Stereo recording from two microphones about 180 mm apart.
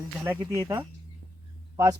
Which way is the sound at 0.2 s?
15° right (ahead or behind).